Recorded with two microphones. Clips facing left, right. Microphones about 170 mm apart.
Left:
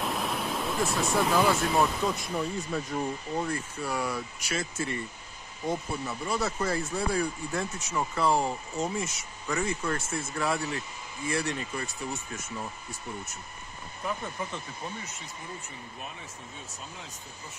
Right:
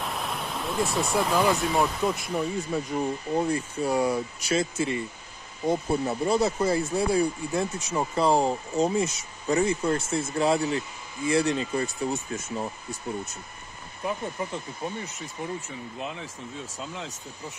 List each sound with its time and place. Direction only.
0.0 s speech: centre (ahead or behind); by 5.0 s 20° right (ahead or behind)
5.9 s speech: 35° right (ahead or behind)
6.4 s speech: 15° right (ahead or behind)
6.9 s speech: 30° right (ahead or behind)
14.0 s speech: 20° right (ahead or behind)
16.0 s speech: 90° right